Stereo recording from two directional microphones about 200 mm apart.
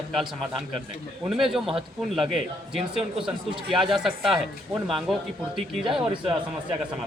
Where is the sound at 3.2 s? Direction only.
25° right (ahead or behind).